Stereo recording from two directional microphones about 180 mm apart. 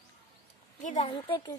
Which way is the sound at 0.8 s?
40° left (ahead or behind).